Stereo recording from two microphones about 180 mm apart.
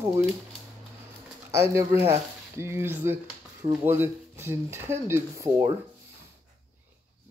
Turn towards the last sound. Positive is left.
turn(degrees=-15)  # may be behind; listen again after turning